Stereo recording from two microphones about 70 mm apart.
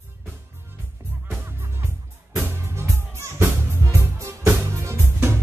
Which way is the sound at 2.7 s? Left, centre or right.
Right.